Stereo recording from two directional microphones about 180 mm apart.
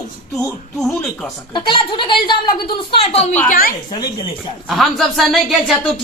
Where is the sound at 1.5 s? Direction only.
25° left (ahead or behind).